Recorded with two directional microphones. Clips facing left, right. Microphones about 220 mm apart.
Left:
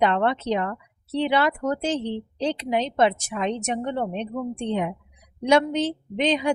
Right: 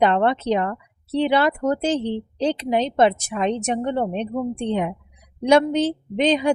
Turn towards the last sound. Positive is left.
turn(degrees=-35)  # may be behind; listen again after turning